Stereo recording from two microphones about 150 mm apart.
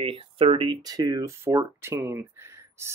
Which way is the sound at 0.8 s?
25° right (ahead or behind).